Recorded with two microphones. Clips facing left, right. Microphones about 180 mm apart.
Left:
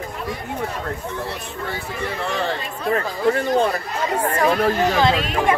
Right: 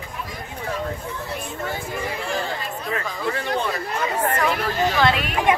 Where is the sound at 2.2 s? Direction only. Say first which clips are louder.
Left 3 dB; 70° left (ahead or behind).